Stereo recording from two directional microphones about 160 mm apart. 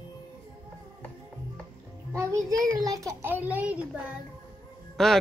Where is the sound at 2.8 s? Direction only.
20° right (ahead or behind).